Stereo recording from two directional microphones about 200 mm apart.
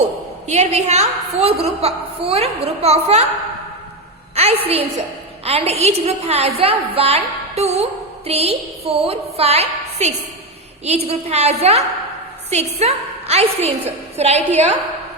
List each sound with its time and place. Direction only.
0.0 s a woman's voice: 35° right (ahead or behind)
4.4 s a woman's voice: 30° right (ahead or behind)